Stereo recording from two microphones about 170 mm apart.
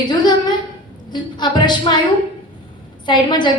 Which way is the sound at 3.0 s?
25° left (ahead or behind).